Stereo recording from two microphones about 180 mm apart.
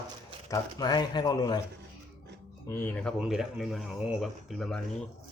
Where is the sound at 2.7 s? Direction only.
10° left (ahead or behind).